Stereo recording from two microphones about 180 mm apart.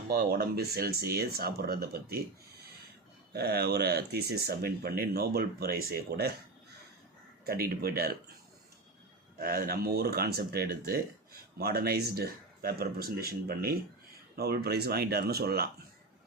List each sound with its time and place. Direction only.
0.1 s speech: 60° right (ahead or behind)
3.3 s speech: 60° right (ahead or behind)
7.4 s speech: 60° right (ahead or behind)
9.4 s speech: 55° right (ahead or behind)